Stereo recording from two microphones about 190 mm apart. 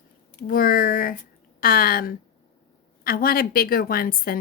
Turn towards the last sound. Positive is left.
turn(degrees=50)  # may be behind; listen again after turning